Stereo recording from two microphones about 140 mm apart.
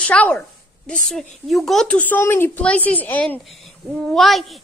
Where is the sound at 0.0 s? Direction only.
10° left (ahead or behind).